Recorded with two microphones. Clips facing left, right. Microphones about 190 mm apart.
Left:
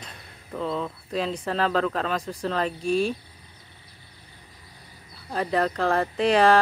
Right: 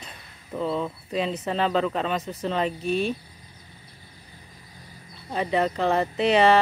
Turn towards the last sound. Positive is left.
turn(degrees=-5)  # may be behind; listen again after turning